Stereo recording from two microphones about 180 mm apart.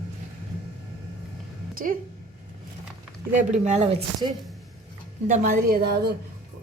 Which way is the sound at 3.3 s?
40° right (ahead or behind).